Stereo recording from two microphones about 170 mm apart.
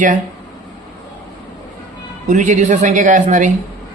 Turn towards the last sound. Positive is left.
turn(degrees=-45)  # may be behind; listen again after turning